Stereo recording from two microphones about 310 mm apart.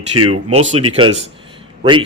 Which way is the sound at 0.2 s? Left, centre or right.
Right.